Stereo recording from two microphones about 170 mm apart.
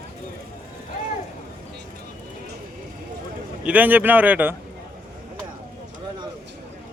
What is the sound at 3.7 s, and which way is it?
Speech, 10° right (ahead or behind).